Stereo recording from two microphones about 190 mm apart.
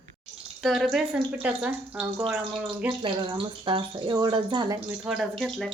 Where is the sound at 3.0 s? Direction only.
25° right (ahead or behind).